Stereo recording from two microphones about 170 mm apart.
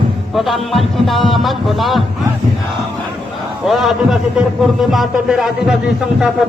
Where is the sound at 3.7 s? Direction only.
Centre (ahead or behind).